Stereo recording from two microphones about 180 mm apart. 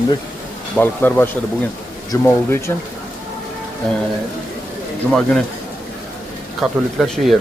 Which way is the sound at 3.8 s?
5° left (ahead or behind).